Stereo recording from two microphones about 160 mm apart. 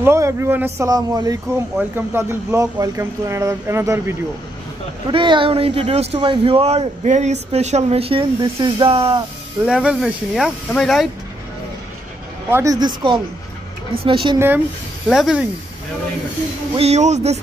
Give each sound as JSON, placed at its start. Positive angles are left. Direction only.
{"t": 0.0, "sound": "speech", "side_deg": -15}
{"t": 0.7, "sound": "speech", "side_deg": -25}
{"t": 5.1, "sound": "speech", "side_deg": -30}
{"t": 9.7, "sound": "speech", "side_deg": -5}
{"t": 12.4, "sound": "speech", "side_deg": -15}
{"t": 15.0, "sound": "speech", "side_deg": -5}
{"t": 16.7, "sound": "speech", "side_deg": -40}